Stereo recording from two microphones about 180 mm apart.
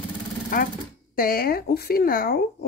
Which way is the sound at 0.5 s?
50° left (ahead or behind).